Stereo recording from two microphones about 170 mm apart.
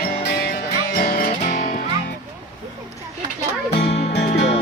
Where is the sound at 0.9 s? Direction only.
60° left (ahead or behind).